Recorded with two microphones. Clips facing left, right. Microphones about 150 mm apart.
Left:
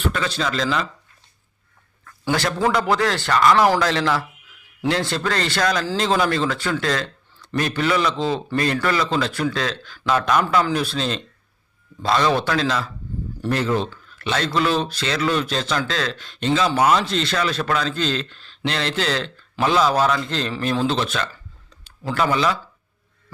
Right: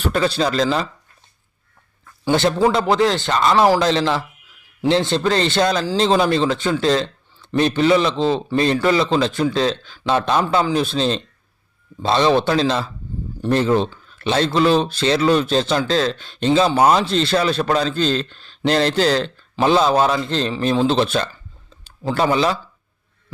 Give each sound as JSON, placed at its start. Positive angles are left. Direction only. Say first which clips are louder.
{"t": 0.0, "sound": "a man's voice", "louder": "right 5 dB", "side_deg": -35}
{"t": 2.2, "sound": "a man's voice", "louder": "right 5 dB", "side_deg": -25}